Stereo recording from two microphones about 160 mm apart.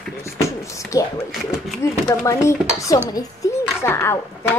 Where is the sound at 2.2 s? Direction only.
20° left (ahead or behind).